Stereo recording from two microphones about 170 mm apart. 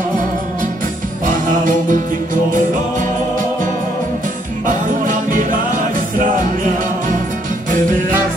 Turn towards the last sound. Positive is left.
turn(degrees=-50)  # may be behind; listen again after turning